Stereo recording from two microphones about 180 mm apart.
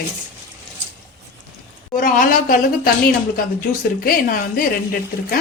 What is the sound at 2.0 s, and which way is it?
Speech, 45° left (ahead or behind).